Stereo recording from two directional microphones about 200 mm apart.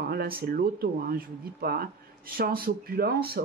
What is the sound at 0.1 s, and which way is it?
Speech, 50° right (ahead or behind).